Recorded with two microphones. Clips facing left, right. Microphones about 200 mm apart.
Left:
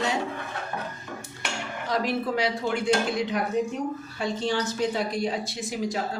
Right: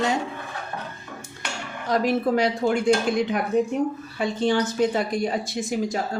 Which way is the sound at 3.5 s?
55° right (ahead or behind).